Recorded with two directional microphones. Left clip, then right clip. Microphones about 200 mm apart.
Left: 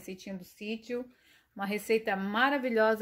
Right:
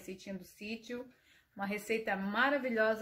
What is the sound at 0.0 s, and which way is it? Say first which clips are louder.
Speech: left 3 dB; 40° left (ahead or behind).